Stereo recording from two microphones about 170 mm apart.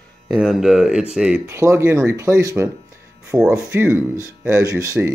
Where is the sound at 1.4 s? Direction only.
15° right (ahead or behind).